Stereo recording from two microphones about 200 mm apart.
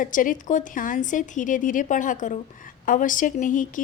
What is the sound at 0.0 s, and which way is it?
A woman's voice, 40° left (ahead or behind).